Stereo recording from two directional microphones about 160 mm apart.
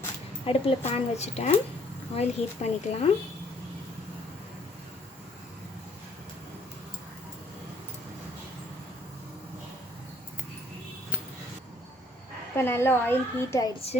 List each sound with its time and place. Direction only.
0.4 s a woman's voice: 40° left (ahead or behind)
12.5 s a woman's voice: 15° left (ahead or behind)